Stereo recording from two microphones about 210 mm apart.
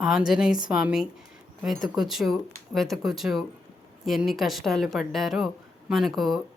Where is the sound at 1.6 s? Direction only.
Centre (ahead or behind).